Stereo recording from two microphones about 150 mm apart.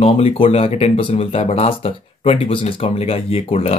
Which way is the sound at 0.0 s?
40° left (ahead or behind).